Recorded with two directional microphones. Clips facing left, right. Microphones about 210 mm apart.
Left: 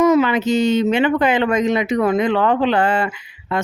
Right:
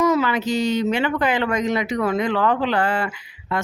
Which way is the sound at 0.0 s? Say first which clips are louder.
Left 5 dB; 20° left (ahead or behind).